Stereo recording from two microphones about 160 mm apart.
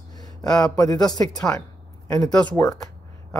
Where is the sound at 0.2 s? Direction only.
25° left (ahead or behind).